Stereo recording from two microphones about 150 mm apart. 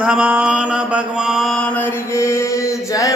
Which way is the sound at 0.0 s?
10° right (ahead or behind).